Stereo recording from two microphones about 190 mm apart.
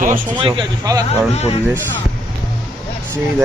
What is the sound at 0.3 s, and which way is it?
Speech, 25° right (ahead or behind).